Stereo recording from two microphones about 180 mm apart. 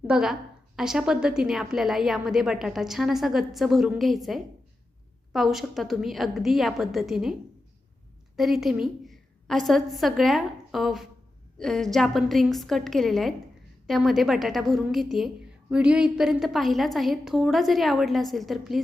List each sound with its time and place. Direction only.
0.1 s a woman's voice: 5° right (ahead or behind)
8.4 s a woman's voice: centre (ahead or behind)